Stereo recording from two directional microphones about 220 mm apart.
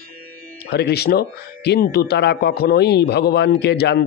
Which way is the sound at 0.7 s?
45° left (ahead or behind).